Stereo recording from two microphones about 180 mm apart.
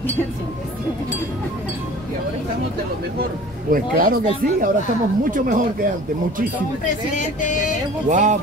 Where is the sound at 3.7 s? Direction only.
50° right (ahead or behind).